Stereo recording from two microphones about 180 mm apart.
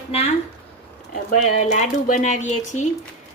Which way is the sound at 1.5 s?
40° left (ahead or behind).